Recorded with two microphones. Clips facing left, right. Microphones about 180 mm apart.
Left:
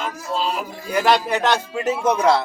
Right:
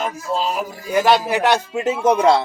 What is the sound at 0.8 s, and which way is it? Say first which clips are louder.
Speech: right 2 dB; 5° right (ahead or behind).